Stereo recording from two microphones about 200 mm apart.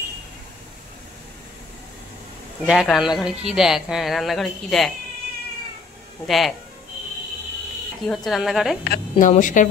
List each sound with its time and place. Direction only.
2.6 s speech: 5° right (ahead or behind)
6.2 s speech: centre (ahead or behind)
8.1 s speech: centre (ahead or behind)
8.8 s speech: 50° left (ahead or behind)
9.3 s a woman's voice: 40° left (ahead or behind)